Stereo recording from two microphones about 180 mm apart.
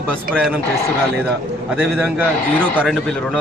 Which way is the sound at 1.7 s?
10° right (ahead or behind).